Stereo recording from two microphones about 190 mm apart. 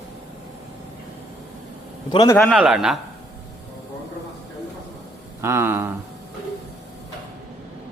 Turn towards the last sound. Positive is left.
turn(degrees=-10)  # may be behind; listen again after turning